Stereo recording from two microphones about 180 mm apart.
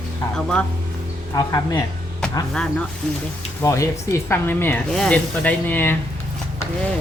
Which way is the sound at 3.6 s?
15° left (ahead or behind).